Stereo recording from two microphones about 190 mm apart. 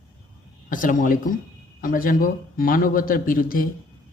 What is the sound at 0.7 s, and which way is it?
Speech, 45° left (ahead or behind).